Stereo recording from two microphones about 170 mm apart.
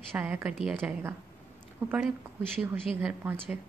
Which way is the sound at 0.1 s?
10° right (ahead or behind).